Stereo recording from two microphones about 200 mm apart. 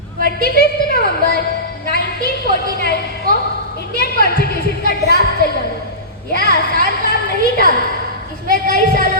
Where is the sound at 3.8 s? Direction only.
50° left (ahead or behind).